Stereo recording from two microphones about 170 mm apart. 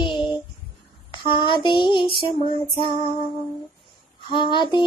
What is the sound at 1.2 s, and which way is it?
Child singing, 30° left (ahead or behind).